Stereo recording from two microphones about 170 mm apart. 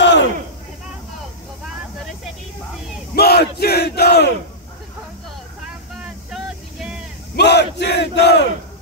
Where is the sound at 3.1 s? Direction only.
70° left (ahead or behind).